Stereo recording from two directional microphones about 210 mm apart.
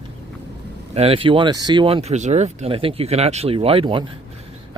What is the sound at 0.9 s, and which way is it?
Speech, 25° right (ahead or behind).